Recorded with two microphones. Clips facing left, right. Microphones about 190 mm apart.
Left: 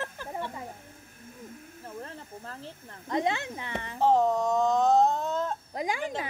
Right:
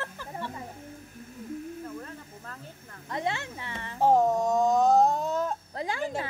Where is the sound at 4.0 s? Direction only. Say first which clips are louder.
Right 1 dB; 10° right (ahead or behind).